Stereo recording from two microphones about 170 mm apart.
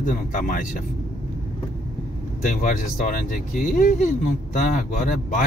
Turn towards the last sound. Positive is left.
turn(degrees=50)  # may be behind; listen again after turning